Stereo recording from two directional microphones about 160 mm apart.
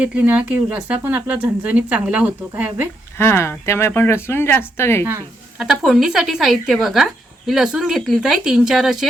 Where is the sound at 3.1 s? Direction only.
15° left (ahead or behind).